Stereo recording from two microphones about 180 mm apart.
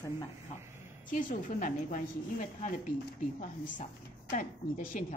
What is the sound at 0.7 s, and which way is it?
A woman's voice, 45° left (ahead or behind).